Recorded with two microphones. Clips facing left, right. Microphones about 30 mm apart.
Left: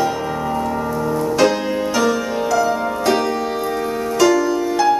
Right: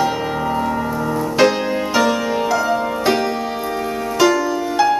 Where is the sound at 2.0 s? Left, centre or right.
Centre.